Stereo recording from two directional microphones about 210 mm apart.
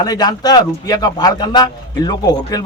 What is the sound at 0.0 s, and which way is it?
Speech, 20° left (ahead or behind).